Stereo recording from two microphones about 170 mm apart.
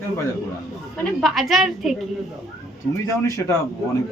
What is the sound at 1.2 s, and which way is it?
Speech, centre (ahead or behind).